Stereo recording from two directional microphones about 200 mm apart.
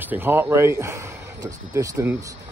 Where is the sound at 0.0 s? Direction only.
10° right (ahead or behind).